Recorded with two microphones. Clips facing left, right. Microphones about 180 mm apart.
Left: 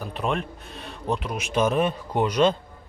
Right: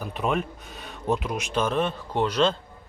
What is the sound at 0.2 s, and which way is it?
A man's voice, 5° right (ahead or behind).